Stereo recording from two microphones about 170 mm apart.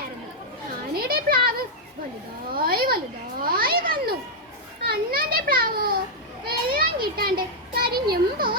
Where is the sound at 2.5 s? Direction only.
60° right (ahead or behind).